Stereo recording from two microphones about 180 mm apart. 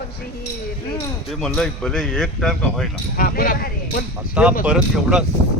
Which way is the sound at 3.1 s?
50° left (ahead or behind).